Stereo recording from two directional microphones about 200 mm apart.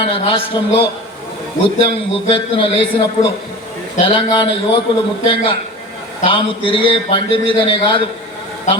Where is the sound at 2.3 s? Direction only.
25° left (ahead or behind).